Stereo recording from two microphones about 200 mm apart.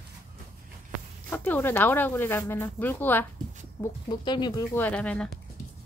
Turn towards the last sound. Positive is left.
turn(degrees=5)  # may be behind; listen again after turning